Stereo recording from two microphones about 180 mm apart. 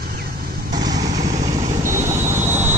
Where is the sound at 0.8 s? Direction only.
20° right (ahead or behind).